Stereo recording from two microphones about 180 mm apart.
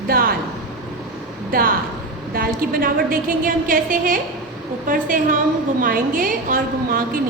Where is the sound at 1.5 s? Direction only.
55° right (ahead or behind).